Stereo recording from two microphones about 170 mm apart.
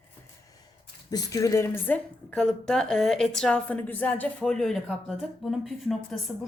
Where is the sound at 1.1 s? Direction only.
20° left (ahead or behind).